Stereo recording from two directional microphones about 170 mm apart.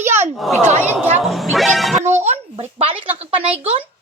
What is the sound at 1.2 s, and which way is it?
Speech, centre (ahead or behind).